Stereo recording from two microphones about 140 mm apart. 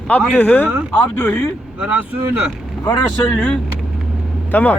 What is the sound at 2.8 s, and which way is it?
Speech, 30° left (ahead or behind).